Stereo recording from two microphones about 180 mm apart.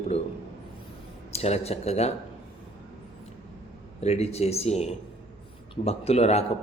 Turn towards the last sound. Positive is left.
turn(degrees=35)  # may be behind; listen again after turning